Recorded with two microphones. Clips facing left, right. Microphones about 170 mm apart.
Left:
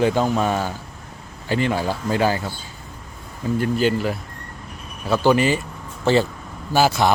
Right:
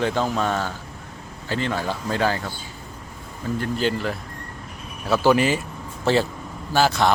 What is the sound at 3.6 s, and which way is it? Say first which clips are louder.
Speech: left 4 dB; 10° left (ahead or behind).